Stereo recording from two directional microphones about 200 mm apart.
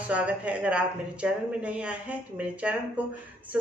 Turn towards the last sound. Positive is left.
turn(degrees=-5)  # may be behind; listen again after turning